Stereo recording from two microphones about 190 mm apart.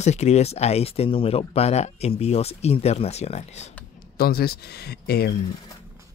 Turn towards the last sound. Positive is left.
turn(degrees=55)  # may be behind; listen again after turning